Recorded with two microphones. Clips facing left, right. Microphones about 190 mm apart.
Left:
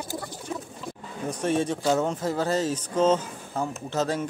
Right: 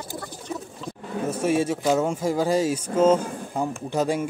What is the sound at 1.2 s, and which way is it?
Speech, 5° right (ahead or behind).